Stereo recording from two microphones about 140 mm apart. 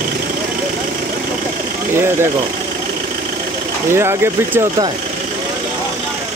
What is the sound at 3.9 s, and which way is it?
Speech, 20° right (ahead or behind).